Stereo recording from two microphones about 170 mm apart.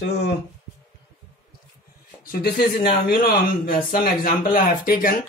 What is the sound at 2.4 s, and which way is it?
Speech, 60° left (ahead or behind).